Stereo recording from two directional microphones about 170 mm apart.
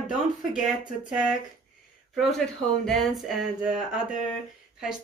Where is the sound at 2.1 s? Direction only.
Centre (ahead or behind).